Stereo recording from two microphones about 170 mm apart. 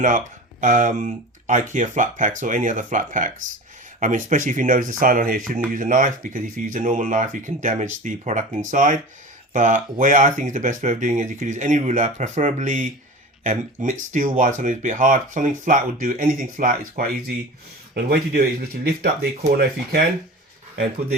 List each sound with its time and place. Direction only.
0.6 s speech: 50° right (ahead or behind); by 20.0 s 65° right (ahead or behind)